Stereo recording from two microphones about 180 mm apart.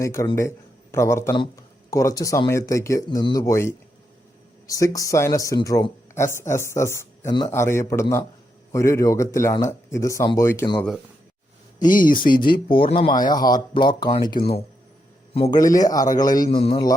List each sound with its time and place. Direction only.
0.0 s a man's voice: 15° left (ahead or behind)
11.8 s speech: 50° left (ahead or behind)
12.3 s a man's voice: 25° left (ahead or behind)
15.5 s speech: 20° left (ahead or behind)